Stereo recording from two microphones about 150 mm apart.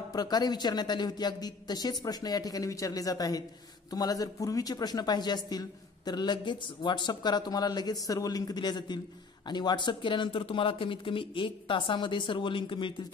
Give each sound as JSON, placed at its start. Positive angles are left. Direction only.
{"t": 0.1, "sound": "a woman's voice", "side_deg": 25}